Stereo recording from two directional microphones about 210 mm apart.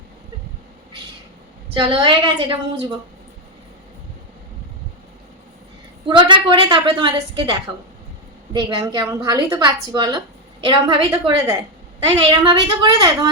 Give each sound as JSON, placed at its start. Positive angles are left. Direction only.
{"t": 1.7, "sound": "a woman's voice", "side_deg": -20}
{"t": 6.1, "sound": "a woman's voice", "side_deg": -20}